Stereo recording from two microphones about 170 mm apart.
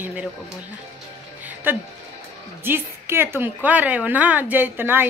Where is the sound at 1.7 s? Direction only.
10° right (ahead or behind).